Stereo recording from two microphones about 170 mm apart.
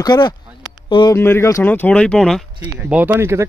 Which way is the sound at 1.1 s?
15° left (ahead or behind).